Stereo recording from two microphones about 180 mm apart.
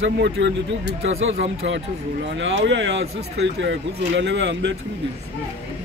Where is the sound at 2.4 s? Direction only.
90° right.